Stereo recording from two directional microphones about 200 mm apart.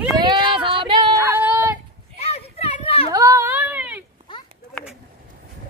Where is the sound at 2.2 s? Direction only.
30° left (ahead or behind).